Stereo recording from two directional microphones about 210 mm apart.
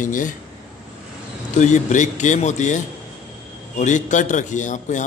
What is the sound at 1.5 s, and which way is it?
A man's voice, 35° left (ahead or behind).